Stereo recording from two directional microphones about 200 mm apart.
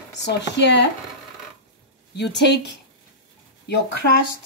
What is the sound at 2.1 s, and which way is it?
Speech, 60° left (ahead or behind).